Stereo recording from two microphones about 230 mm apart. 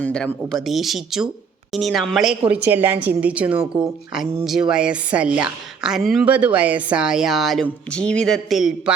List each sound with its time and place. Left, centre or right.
0.0 s a woman's voice: centre